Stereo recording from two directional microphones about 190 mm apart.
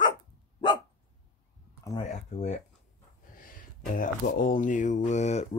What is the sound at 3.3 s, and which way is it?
Speech, 45° left (ahead or behind).